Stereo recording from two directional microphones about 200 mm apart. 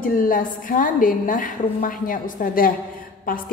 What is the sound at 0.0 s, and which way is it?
A woman's voice, 45° left (ahead or behind).